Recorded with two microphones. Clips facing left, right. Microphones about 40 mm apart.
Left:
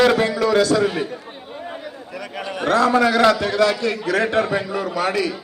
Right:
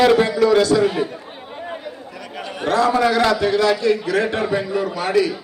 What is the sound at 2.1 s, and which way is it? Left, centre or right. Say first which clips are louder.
Chatter: left 3 dB; left.